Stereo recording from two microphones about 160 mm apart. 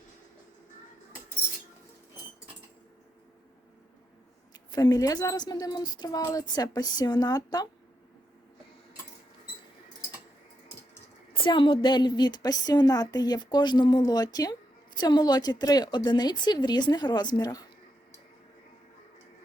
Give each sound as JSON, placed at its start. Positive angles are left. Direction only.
{"t": 4.7, "sound": "a woman's voice", "side_deg": 25}
{"t": 11.3, "sound": "a woman's voice", "side_deg": 30}